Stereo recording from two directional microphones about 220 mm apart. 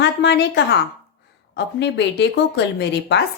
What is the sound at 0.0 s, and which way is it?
A woman's voice, 50° left (ahead or behind).